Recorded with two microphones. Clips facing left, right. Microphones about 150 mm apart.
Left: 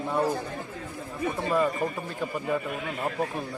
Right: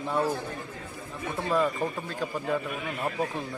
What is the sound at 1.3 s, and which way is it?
A man's voice, 15° left (ahead or behind).